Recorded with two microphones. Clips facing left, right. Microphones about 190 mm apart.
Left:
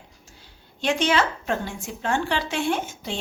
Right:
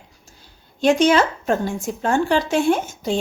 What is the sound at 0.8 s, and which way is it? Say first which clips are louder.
A woman's voice: right 7 dB; 45° right (ahead or behind).